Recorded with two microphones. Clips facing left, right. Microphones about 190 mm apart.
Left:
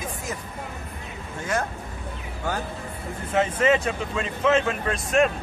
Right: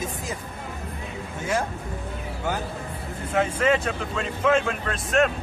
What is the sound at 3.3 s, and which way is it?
Speech, 5° left (ahead or behind).